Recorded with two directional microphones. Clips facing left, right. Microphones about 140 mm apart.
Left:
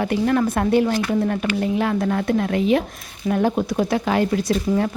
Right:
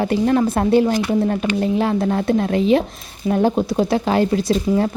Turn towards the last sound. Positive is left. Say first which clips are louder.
# right 2 dB
turn(degrees=-30)  # may be behind; listen again after turning